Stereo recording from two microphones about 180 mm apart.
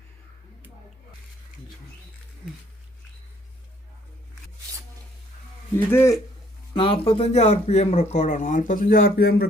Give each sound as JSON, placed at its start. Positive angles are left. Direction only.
{"t": 5.7, "sound": "speech", "side_deg": 15}
{"t": 6.7, "sound": "speech", "side_deg": 30}